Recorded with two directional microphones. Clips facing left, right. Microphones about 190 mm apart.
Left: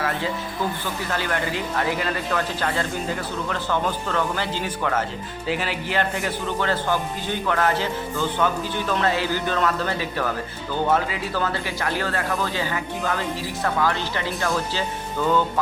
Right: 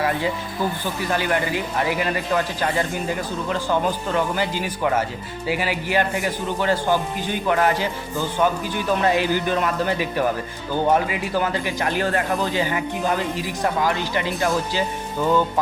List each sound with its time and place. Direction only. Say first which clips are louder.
1.1 s speech: right 4 dB; 15° right (ahead or behind)